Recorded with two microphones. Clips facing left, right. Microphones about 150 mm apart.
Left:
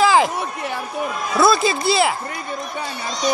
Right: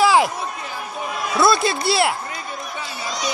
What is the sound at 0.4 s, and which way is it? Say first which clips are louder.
Speech: left 4 dB; 70° left (ahead or behind).